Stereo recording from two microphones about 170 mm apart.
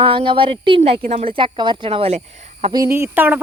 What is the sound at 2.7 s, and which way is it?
Speech, 15° right (ahead or behind).